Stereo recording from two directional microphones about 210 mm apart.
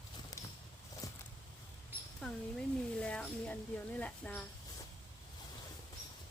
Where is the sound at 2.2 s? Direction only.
5° left (ahead or behind).